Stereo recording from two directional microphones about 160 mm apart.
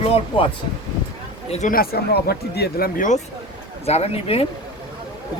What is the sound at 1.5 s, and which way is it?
Speech, 45° left (ahead or behind).